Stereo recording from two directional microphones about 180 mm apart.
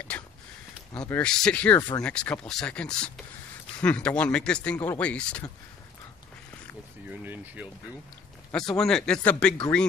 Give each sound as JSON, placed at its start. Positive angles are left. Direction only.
{"t": 1.0, "sound": "speech", "side_deg": 10}
{"t": 1.8, "sound": "speech", "side_deg": 20}
{"t": 2.0, "sound": "speech", "side_deg": 5}
{"t": 7.1, "sound": "speech", "side_deg": -10}
{"t": 8.5, "sound": "speech", "side_deg": 5}